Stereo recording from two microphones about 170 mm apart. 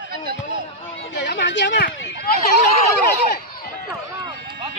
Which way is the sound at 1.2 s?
90° left.